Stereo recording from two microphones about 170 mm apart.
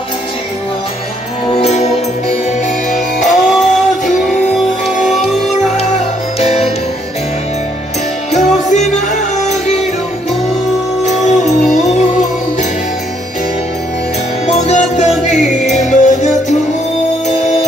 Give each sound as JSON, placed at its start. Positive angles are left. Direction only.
{"t": 1.5, "sound": "music", "side_deg": 40}
{"t": 3.3, "sound": "music", "side_deg": 0}
{"t": 8.3, "sound": "music", "side_deg": 45}
{"t": 11.1, "sound": "music", "side_deg": 45}
{"t": 11.4, "sound": "music", "side_deg": 0}
{"t": 11.8, "sound": "music", "side_deg": 40}
{"t": 14.4, "sound": "music", "side_deg": 40}